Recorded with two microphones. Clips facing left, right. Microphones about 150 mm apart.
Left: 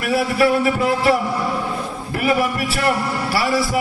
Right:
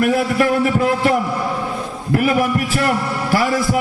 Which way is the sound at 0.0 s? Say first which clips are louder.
Right 3 dB; 50° right (ahead or behind).